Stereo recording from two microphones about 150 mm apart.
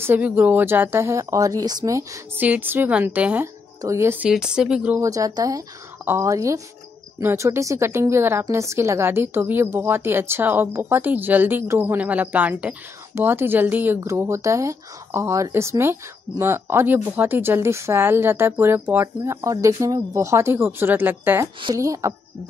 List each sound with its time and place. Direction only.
0.0 s a woman's voice: 15° right (ahead or behind)
4.3 s speech: 5° right (ahead or behind)
5.0 s a woman's voice: 25° right (ahead or behind)